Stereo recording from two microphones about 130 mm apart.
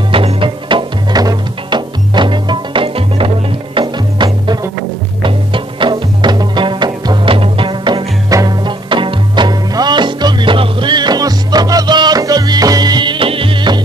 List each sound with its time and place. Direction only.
0.1 s music: 45° right (ahead or behind)